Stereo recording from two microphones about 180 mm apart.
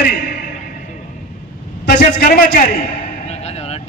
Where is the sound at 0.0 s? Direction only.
60° left (ahead or behind).